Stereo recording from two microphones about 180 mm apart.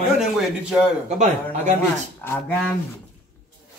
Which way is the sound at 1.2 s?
40° right (ahead or behind).